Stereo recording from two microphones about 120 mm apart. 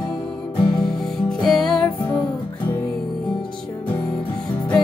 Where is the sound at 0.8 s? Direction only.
5° left (ahead or behind).